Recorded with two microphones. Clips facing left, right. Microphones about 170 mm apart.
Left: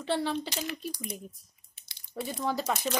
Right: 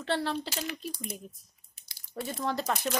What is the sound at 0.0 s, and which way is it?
Speech, centre (ahead or behind).